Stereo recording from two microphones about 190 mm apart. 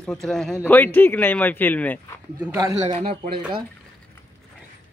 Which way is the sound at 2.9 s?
30° right (ahead or behind).